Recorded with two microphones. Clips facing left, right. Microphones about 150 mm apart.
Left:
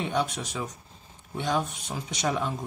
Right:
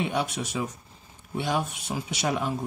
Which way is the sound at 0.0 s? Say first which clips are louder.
Even; 10° right (ahead or behind).